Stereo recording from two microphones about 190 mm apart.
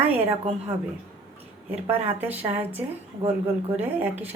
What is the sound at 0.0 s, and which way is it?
Speech, 10° right (ahead or behind).